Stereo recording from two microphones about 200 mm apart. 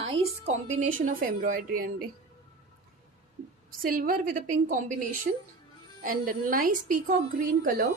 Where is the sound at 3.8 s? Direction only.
45° right (ahead or behind).